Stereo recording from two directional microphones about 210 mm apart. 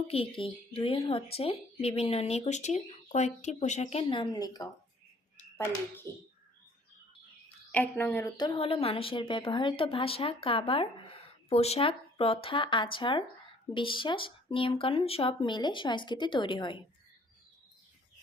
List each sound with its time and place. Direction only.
0.1 s a woman's voice: 25° left (ahead or behind); by 6.1 s 10° left (ahead or behind)
7.7 s a woman's voice: 10° left (ahead or behind)